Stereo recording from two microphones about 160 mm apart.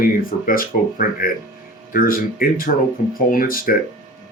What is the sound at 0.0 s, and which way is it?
Speech, 60° left (ahead or behind).